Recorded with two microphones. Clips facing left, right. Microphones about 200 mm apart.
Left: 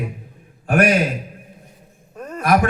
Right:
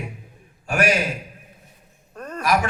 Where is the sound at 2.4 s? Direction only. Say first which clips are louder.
Left 4 dB; 55° left (ahead or behind).